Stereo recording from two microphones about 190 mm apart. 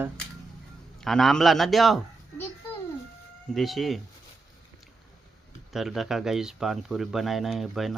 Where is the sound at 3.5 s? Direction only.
Centre (ahead or behind).